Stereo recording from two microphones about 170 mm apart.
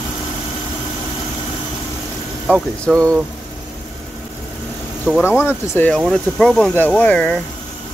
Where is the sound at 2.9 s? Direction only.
20° right (ahead or behind).